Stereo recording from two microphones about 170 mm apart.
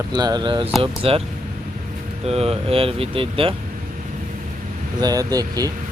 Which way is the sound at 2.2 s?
35° right (ahead or behind).